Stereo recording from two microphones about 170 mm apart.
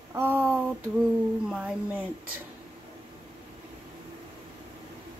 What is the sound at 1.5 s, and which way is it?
Speech, 10° right (ahead or behind).